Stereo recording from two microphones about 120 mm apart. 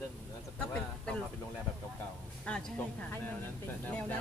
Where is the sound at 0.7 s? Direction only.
10° left (ahead or behind).